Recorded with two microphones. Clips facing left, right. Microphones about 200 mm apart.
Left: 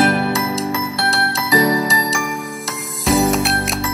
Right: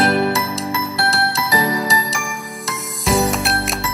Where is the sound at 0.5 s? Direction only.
Centre (ahead or behind).